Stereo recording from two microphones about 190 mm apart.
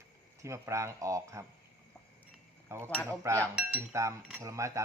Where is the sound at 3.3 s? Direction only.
15° right (ahead or behind).